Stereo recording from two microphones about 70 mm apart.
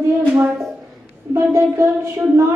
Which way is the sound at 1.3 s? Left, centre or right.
Right.